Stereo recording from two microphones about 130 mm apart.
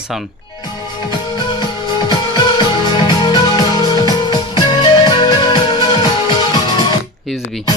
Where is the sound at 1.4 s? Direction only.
35° left (ahead or behind).